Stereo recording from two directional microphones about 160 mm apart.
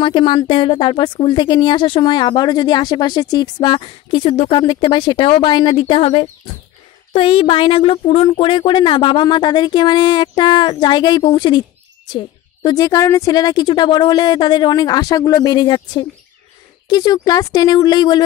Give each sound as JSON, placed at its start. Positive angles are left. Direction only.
{"t": 0.0, "sound": "speech", "side_deg": 30}
{"t": 12.6, "sound": "speech", "side_deg": 25}